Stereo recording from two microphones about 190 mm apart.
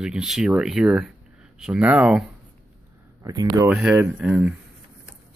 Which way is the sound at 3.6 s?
5° right (ahead or behind).